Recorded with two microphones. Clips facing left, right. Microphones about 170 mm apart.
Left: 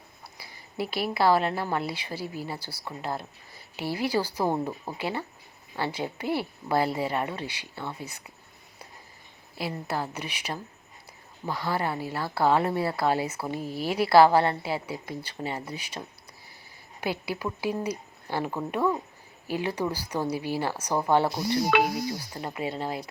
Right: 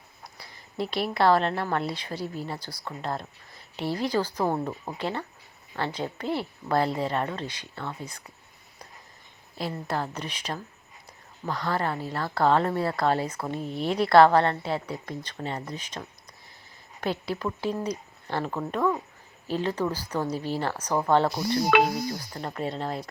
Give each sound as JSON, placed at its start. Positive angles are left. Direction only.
{"t": 0.3, "sound": "speech", "side_deg": 5}
{"t": 9.6, "sound": "speech", "side_deg": 5}
{"t": 21.7, "sound": "speech", "side_deg": -80}
{"t": 22.3, "sound": "speech", "side_deg": 10}